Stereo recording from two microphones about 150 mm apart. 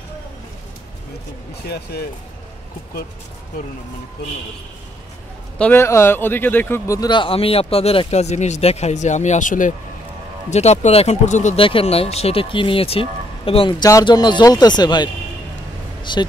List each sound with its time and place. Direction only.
1.7 s speech: 90° left
5.6 s speech: 15° left (ahead or behind); by 9.8 s 60° left (ahead or behind)
10.5 s speech: 45° left (ahead or behind)
11.5 s speech: 40° left (ahead or behind)